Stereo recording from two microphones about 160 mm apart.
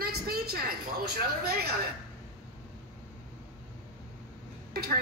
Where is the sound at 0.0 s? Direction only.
70° right (ahead or behind).